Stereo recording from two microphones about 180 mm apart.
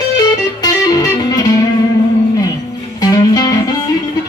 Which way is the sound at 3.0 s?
20° left (ahead or behind).